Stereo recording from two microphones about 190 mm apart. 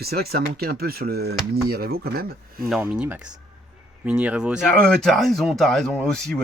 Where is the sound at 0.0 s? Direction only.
55° right (ahead or behind).